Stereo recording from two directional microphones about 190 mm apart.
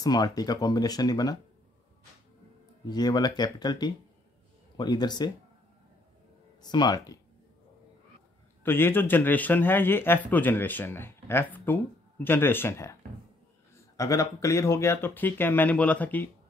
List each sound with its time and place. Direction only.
0.0 s speech: 20° left (ahead or behind)
2.9 s speech: 20° left (ahead or behind)
6.6 s speech: 20° left (ahead or behind)
8.6 s speech: 10° left (ahead or behind)